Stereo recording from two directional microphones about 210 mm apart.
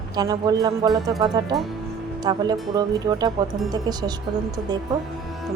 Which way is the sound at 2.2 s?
20° right (ahead or behind).